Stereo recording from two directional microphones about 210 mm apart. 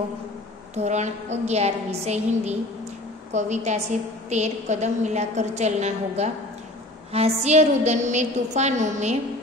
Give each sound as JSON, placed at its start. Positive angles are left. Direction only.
{"t": 0.7, "sound": "a woman's voice", "side_deg": -35}